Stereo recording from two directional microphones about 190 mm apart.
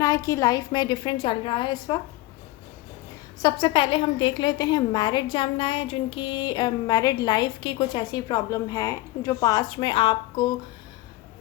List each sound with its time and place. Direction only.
0.0 s a woman's voice: 15° left (ahead or behind)
3.4 s a woman's voice: 25° left (ahead or behind)